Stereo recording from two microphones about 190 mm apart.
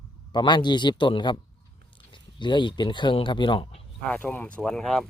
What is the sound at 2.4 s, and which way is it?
Speech, 25° left (ahead or behind).